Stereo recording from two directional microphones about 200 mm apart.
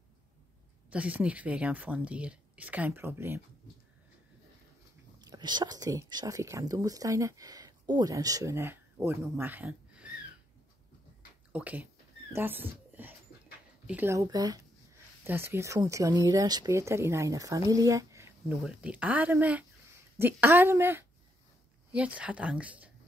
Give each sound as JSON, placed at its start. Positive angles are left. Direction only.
{"t": 0.8, "sound": "speech", "side_deg": -5}
{"t": 5.2, "sound": "speech", "side_deg": -20}
{"t": 11.5, "sound": "speech", "side_deg": -5}